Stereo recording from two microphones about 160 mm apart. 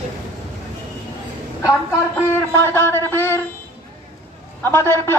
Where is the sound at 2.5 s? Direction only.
15° left (ahead or behind).